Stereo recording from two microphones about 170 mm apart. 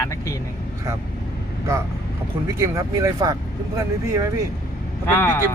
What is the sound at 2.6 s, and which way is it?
Speech, 15° right (ahead or behind).